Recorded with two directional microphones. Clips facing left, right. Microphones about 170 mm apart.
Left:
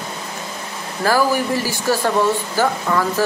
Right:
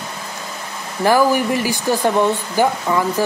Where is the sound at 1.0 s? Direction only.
20° right (ahead or behind).